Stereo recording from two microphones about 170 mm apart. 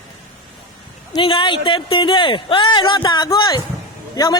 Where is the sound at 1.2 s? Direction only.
30° left (ahead or behind).